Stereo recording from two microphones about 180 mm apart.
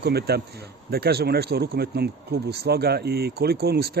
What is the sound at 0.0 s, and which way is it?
Speech, 65° right (ahead or behind).